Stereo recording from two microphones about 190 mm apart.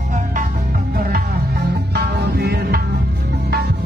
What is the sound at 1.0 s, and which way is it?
Music, 50° right (ahead or behind).